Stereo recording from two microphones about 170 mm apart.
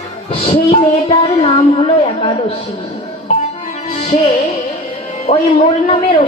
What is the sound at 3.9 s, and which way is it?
Music, 40° left (ahead or behind).